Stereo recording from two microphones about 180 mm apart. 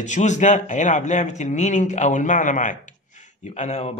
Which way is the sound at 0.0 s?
40° left (ahead or behind).